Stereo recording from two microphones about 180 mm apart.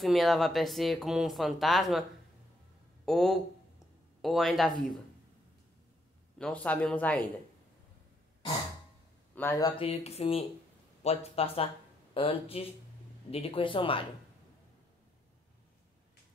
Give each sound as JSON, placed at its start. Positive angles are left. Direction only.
{"t": 0.0, "sound": "speech", "side_deg": 0}
{"t": 3.1, "sound": "speech", "side_deg": 0}
{"t": 6.3, "sound": "speech", "side_deg": 5}
{"t": 9.3, "sound": "a man's voice", "side_deg": 10}
{"t": 9.6, "sound": "speech", "side_deg": 20}
{"t": 9.8, "sound": "speech", "side_deg": 35}